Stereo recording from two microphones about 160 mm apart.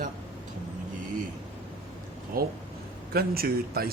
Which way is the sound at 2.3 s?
65° right (ahead or behind).